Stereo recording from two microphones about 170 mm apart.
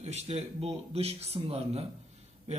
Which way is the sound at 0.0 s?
40° right (ahead or behind).